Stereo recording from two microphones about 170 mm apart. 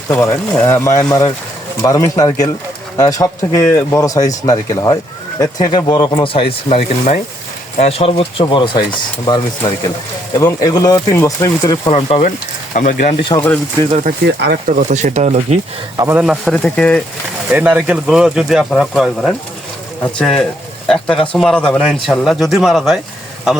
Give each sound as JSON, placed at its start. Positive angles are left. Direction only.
{"t": 0.1, "sound": "speech", "side_deg": 15}
{"t": 11.9, "sound": "speech", "side_deg": 35}
{"t": 12.7, "sound": "speech", "side_deg": 50}
{"t": 13.2, "sound": "speech", "side_deg": 25}
{"t": 14.3, "sound": "speech", "side_deg": -80}
{"t": 14.7, "sound": "speech", "side_deg": -45}
{"t": 16.0, "sound": "a man's voice", "side_deg": -15}
{"t": 16.2, "sound": "speech", "side_deg": 0}
{"t": 17.5, "sound": "speech", "side_deg": -10}